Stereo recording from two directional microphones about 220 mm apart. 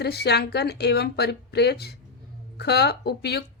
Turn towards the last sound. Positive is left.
turn(degrees=45)  # may be behind; listen again after turning